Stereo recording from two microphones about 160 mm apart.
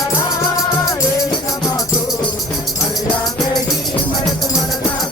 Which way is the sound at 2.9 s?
Centre (ahead or behind).